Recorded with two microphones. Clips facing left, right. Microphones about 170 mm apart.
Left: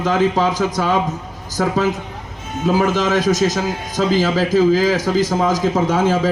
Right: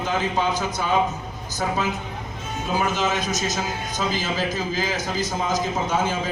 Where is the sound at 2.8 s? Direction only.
90° left.